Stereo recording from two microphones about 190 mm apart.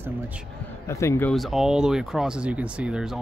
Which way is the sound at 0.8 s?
15° left (ahead or behind).